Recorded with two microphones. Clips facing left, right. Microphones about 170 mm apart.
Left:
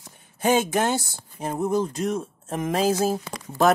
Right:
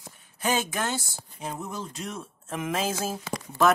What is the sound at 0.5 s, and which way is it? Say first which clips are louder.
Speech: left 7 dB; 50° left (ahead or behind).